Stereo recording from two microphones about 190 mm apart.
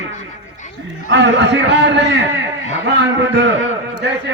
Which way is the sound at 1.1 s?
70° right (ahead or behind).